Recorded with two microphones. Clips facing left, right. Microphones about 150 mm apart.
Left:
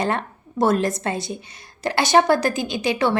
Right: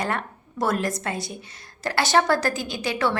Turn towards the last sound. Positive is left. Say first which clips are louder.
# left 4 dB
turn(degrees=20)  # may be behind; listen again after turning